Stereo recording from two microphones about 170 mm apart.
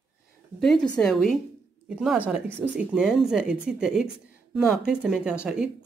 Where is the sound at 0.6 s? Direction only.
5° left (ahead or behind).